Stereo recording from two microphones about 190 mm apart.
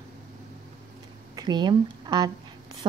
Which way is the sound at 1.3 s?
20° right (ahead or behind).